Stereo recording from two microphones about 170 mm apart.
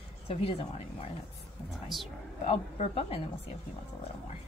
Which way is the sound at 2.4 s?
35° left (ahead or behind).